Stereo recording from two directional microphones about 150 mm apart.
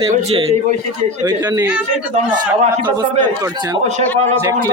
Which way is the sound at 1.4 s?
25° right (ahead or behind).